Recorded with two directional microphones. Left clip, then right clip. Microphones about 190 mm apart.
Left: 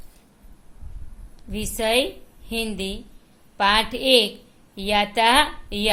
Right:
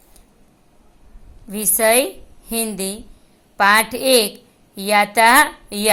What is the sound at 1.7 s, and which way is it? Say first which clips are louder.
A woman's voice: right 5 dB; 15° right (ahead or behind).